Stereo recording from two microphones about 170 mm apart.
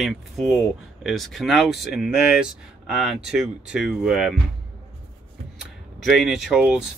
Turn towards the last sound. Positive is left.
turn(degrees=-5)  # may be behind; listen again after turning